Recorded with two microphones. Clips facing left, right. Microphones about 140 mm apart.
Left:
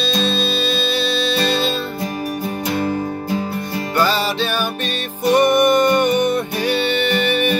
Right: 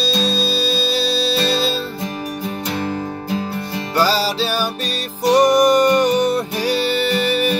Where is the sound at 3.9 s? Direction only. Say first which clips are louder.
Right 1 dB; 35° right (ahead or behind).